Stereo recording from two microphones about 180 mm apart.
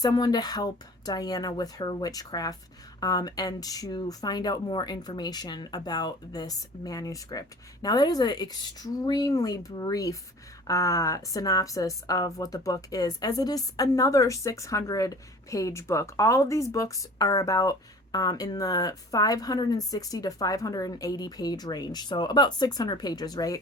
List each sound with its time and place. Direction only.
0.0 s a woman's voice: 20° left (ahead or behind)